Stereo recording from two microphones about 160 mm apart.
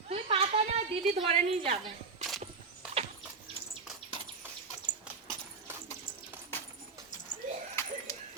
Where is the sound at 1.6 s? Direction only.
45° right (ahead or behind).